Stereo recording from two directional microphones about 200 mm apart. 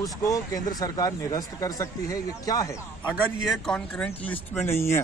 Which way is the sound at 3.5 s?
5° left (ahead or behind).